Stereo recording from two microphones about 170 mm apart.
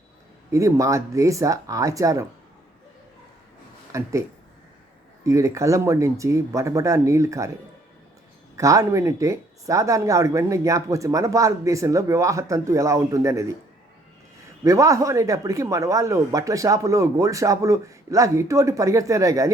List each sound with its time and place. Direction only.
0.5 s speech: 20° right (ahead or behind)
3.9 s speech: 15° right (ahead or behind)
5.2 s speech: 20° right (ahead or behind)
8.5 s speech: 20° right (ahead or behind)
14.6 s speech: 20° right (ahead or behind)